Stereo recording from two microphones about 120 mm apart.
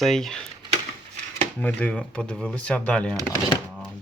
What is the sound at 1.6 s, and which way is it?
Speech, 5° left (ahead or behind).